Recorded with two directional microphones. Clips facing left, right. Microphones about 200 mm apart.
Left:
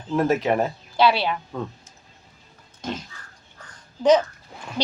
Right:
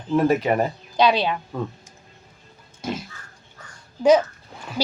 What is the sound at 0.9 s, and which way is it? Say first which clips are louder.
Speech: right 1 dB; 15° right (ahead or behind).